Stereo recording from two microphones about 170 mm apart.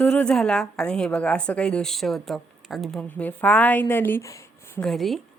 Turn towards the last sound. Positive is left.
turn(degrees=0)  # may be behind; listen again after turning